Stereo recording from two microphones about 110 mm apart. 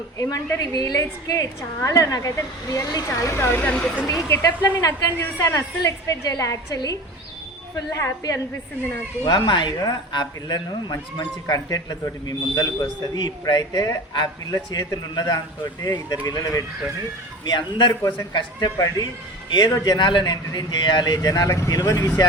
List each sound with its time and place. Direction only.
0.2 s speech: 35° left (ahead or behind); by 4.0 s 15° left (ahead or behind)
4.0 s speech: 30° left (ahead or behind)
9.2 s speech: 40° left (ahead or behind)